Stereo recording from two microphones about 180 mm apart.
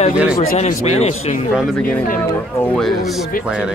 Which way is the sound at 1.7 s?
5° left (ahead or behind).